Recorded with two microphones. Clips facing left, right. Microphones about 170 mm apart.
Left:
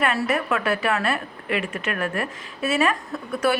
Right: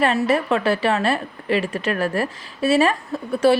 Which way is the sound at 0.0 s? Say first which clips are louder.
Right 4 dB; 30° right (ahead or behind).